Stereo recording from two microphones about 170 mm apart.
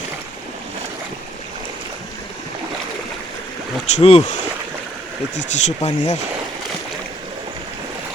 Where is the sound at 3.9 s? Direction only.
40° left (ahead or behind).